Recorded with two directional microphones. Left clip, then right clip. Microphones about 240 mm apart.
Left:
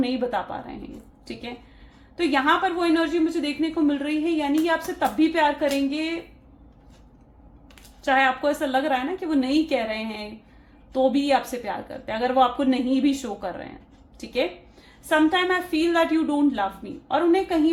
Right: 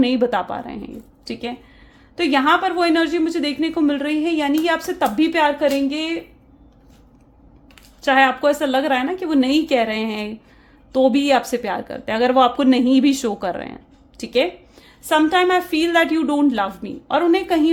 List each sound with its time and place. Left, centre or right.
0.0 s a woman's voice: right
8.0 s a woman's voice: right
15.1 s a woman's voice: right